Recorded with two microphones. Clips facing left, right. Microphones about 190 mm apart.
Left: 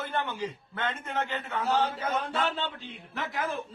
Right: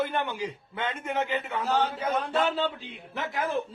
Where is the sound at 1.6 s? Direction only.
Centre (ahead or behind).